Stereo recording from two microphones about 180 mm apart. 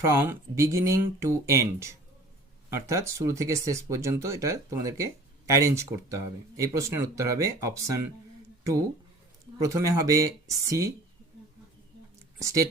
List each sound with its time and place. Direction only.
0.0 s speech: 15° right (ahead or behind)
9.6 s speech: 15° right (ahead or behind)
12.4 s speech: 15° right (ahead or behind)